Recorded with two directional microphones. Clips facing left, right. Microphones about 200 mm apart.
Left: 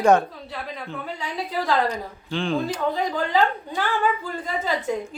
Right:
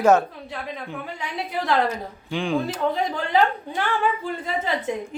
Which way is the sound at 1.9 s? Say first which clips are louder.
Even; 10° right (ahead or behind).